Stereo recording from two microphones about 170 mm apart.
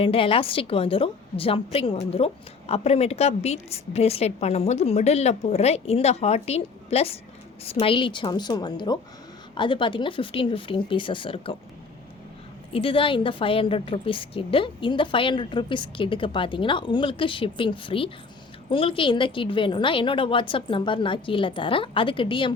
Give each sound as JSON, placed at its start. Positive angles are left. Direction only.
{"t": 0.0, "sound": "a woman's voice", "side_deg": 30}
{"t": 12.7, "sound": "a woman's voice", "side_deg": 30}